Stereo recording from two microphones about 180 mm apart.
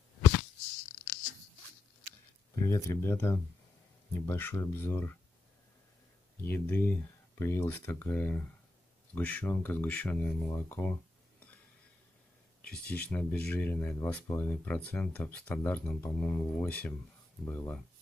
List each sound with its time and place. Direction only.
2.5 s speech: 20° left (ahead or behind)
6.4 s speech: 10° left (ahead or behind)
12.7 s speech: 10° left (ahead or behind)